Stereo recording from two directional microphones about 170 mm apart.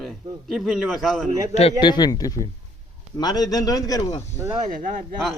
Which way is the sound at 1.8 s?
25° left (ahead or behind).